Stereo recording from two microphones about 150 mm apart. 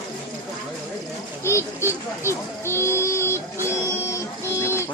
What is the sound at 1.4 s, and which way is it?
Speech, 15° left (ahead or behind).